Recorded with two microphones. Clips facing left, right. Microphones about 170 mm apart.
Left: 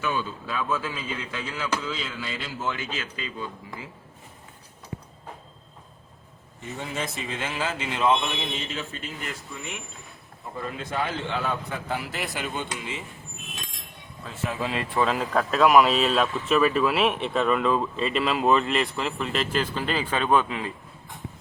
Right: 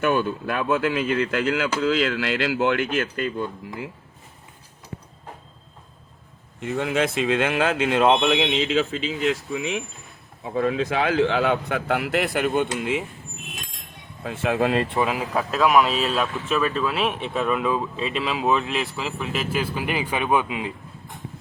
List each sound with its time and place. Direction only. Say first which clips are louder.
0.0 s a man's voice: right 7 dB; 65° right (ahead or behind)
6.6 s a man's voice: right 9 dB; 70° right (ahead or behind); by 9.8 s 90° right
10.4 s a man's voice: right 11 dB; 80° right; by 13.1 s 60° right (ahead or behind)
14.3 s a man's voice: right 8 dB; 70° right (ahead or behind)
15.0 s speech: even; 10° right (ahead or behind)